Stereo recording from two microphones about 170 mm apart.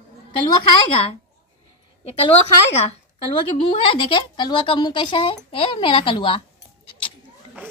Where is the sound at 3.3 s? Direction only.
30° left (ahead or behind).